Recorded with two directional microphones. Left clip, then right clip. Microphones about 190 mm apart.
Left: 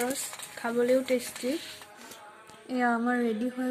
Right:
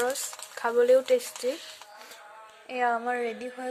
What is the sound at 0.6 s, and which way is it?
Stir, 45° right (ahead or behind).